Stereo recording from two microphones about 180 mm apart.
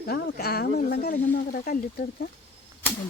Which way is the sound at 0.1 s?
60° left (ahead or behind).